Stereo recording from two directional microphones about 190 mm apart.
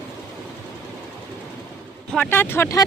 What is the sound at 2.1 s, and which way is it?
Speech, 10° left (ahead or behind).